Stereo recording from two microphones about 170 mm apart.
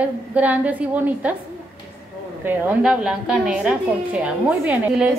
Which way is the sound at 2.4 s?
10° right (ahead or behind).